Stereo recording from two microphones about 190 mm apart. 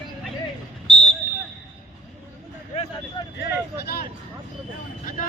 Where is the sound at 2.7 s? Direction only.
30° left (ahead or behind).